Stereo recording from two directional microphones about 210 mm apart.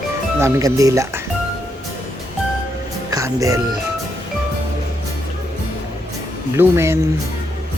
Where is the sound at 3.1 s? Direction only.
15° right (ahead or behind).